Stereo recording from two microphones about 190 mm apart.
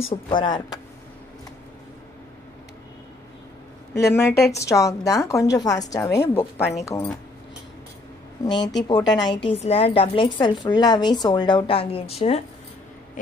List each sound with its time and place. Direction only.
0.1 s a woman's voice: 25° left (ahead or behind)
3.9 s a woman's voice: 15° left (ahead or behind)
8.5 s a woman's voice: 25° left (ahead or behind)
9.5 s a woman's voice: 30° left (ahead or behind)